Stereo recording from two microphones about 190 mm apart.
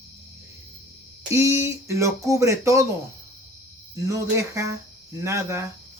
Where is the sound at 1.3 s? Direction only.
15° right (ahead or behind).